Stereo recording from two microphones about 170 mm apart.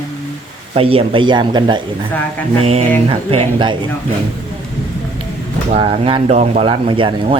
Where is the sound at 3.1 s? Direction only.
35° right (ahead or behind).